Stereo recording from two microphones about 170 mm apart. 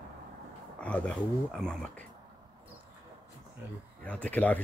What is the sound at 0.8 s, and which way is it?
Speech, 5° left (ahead or behind).